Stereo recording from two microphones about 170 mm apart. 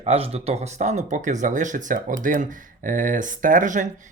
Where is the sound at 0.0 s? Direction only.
35° right (ahead or behind).